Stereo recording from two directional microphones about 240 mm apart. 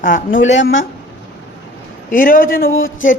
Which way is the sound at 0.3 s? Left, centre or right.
Left.